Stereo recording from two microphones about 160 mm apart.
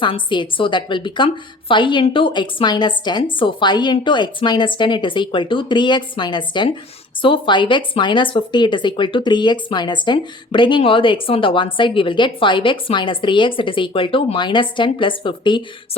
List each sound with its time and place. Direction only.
0.0 s a woman's voice: 30° left (ahead or behind)